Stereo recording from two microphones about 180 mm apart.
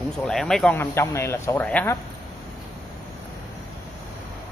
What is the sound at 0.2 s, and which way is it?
Speech, centre (ahead or behind).